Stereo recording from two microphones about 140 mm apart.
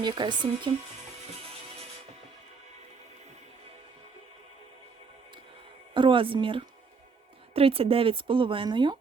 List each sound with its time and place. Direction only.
0.0 s speech: 35° right (ahead or behind)
5.9 s speech: 35° right (ahead or behind)